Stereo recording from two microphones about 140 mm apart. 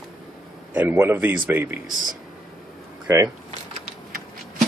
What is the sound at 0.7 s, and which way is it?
A man's voice, 15° right (ahead or behind).